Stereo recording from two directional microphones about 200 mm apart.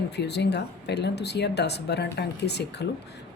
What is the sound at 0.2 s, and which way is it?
Speech, 55° left (ahead or behind).